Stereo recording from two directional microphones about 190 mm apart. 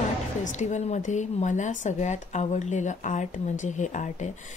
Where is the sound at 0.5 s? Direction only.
40° left (ahead or behind).